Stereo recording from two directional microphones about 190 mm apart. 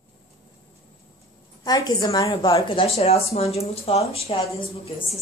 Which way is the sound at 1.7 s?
20° left (ahead or behind).